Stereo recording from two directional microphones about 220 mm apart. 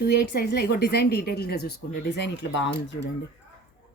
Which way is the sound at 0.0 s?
45° left (ahead or behind).